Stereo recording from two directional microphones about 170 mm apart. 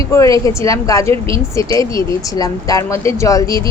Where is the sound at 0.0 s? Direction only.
20° left (ahead or behind).